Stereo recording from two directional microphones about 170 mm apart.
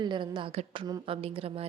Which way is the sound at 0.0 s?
25° right (ahead or behind).